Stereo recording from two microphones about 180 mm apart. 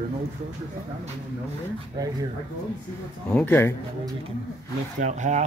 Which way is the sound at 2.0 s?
20° right (ahead or behind).